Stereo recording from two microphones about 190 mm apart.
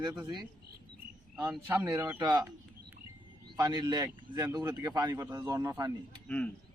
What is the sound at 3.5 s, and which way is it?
Speech, 20° right (ahead or behind).